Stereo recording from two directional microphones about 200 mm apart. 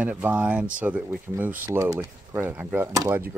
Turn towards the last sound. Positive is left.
turn(degrees=-10)  # may be behind; listen again after turning